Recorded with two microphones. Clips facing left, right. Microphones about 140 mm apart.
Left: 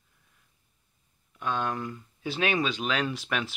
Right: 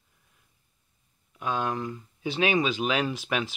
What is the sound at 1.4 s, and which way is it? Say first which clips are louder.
Speech: right 1 dB; 5° right (ahead or behind).